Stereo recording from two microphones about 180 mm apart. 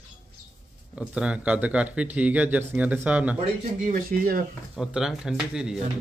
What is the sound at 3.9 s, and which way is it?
Speech, 55° right (ahead or behind).